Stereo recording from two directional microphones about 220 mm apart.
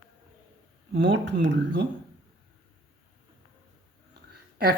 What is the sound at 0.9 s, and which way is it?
Speech, 55° right (ahead or behind).